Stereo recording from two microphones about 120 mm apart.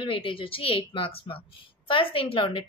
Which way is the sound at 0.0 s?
50° left (ahead or behind).